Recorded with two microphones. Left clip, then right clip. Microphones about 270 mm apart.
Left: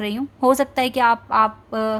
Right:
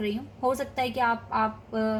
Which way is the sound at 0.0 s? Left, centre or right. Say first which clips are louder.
Left 8 dB; left.